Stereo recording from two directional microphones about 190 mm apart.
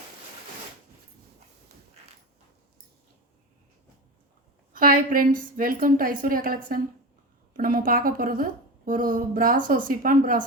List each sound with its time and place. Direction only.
4.7 s a woman's voice: 50° right (ahead or behind)